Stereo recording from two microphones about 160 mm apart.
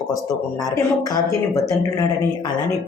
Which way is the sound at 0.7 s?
20° left (ahead or behind).